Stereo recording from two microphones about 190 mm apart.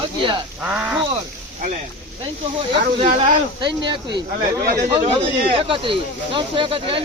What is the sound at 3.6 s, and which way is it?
Speech, 25° right (ahead or behind).